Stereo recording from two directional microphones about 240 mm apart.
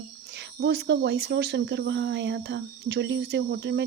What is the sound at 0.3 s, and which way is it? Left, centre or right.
Speech, right.